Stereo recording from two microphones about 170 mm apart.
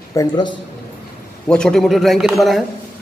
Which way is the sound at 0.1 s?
20° left (ahead or behind).